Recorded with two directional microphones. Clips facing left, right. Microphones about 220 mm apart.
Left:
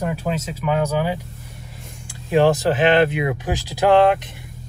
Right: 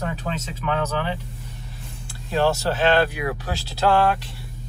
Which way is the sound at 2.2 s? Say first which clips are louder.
Left 5 dB; 15° left (ahead or behind).